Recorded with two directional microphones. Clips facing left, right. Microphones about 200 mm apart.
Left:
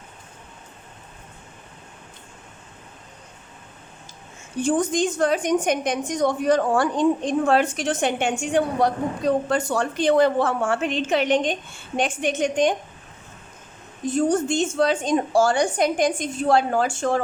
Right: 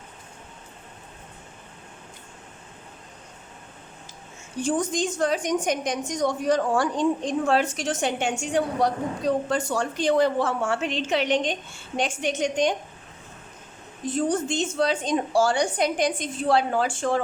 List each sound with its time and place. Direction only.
4.6 s a woman's voice: 55° left (ahead or behind)
14.1 s a woman's voice: 45° left (ahead or behind)